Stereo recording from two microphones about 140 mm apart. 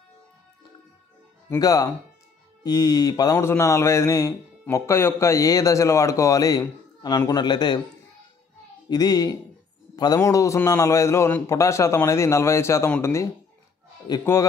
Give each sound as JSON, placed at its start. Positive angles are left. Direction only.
{"t": 1.5, "sound": "speech", "side_deg": 25}
{"t": 8.8, "sound": "speech", "side_deg": 30}
{"t": 14.1, "sound": "speech", "side_deg": 30}